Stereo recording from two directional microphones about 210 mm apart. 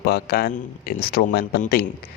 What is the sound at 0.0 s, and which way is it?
Speech, 50° left (ahead or behind).